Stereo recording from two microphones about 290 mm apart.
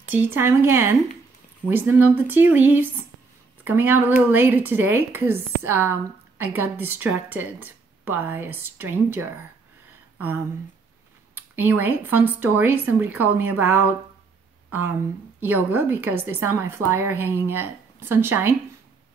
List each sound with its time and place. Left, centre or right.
0.4 s a woman's voice: centre